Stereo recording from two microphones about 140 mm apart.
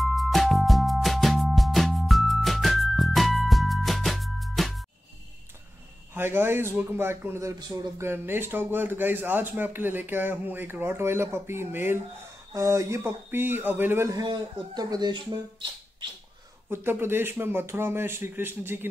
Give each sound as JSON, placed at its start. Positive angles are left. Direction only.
{"t": 0.0, "sound": "music", "side_deg": 0}
{"t": 6.1, "sound": "speech", "side_deg": -15}
{"t": 16.6, "sound": "speech", "side_deg": -15}